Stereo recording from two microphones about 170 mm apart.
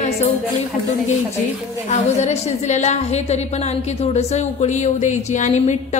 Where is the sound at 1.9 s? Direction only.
45° left (ahead or behind).